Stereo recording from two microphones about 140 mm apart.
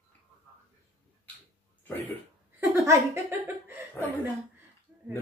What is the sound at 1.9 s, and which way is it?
Speech, 15° left (ahead or behind).